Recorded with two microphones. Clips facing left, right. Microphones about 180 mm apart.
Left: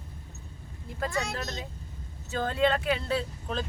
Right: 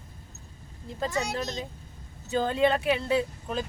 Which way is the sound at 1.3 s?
20° right (ahead or behind).